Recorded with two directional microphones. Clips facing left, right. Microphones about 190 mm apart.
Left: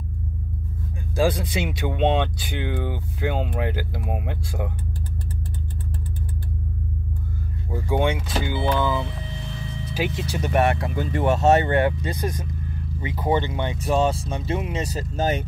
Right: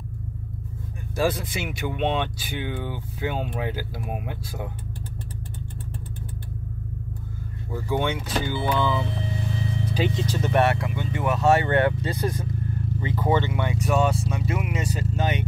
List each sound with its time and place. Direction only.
1.1 s speech: 15° left (ahead or behind)
7.7 s speech: 15° left (ahead or behind)
9.9 s speech: 10° left (ahead or behind)
10.8 s speech: 35° left (ahead or behind)